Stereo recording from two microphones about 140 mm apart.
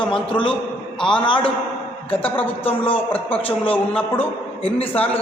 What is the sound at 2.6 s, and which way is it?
Speech, 40° left (ahead or behind).